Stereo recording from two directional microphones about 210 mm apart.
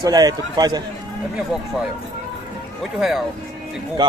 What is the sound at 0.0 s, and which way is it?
Speech, 20° right (ahead or behind).